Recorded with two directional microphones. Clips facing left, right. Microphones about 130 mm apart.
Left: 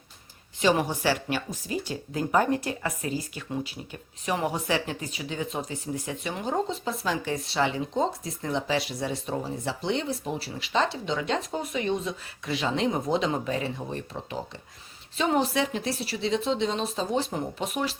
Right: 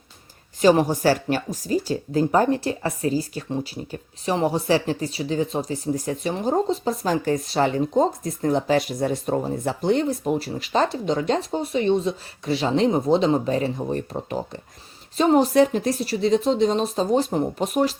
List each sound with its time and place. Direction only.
0.6 s speech: 40° right (ahead or behind)